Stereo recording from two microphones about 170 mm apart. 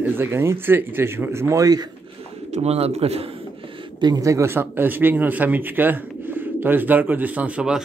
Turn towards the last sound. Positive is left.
turn(degrees=-5)  # may be behind; listen again after turning